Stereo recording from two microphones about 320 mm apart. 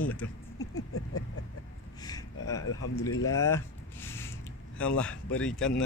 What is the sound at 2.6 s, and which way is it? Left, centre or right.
Speech, left.